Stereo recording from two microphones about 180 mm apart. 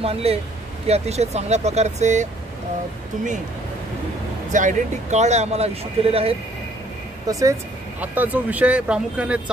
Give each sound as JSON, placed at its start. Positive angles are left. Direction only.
{"t": 0.0, "sound": "speech", "side_deg": -35}
{"t": 4.5, "sound": "speech", "side_deg": -45}
{"t": 7.2, "sound": "speech", "side_deg": -20}